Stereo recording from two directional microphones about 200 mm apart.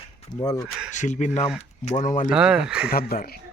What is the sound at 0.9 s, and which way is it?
Speech, 40° left (ahead or behind).